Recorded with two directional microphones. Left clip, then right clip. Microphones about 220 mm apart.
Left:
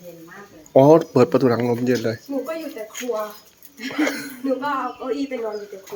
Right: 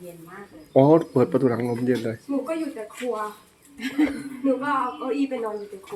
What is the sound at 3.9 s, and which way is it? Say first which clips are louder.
Speech: left 2 dB; 30° left (ahead or behind).